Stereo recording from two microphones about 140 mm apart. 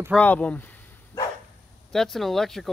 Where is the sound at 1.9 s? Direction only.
Centre (ahead or behind).